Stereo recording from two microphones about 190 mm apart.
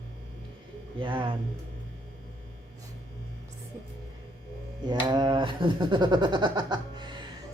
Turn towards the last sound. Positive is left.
turn(degrees=-25)  # may be behind; listen again after turning